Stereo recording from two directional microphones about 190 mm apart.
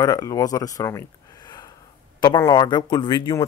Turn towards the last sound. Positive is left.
turn(degrees=20)  # may be behind; listen again after turning